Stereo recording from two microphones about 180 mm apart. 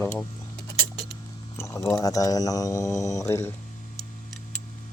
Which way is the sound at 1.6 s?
15° left (ahead or behind).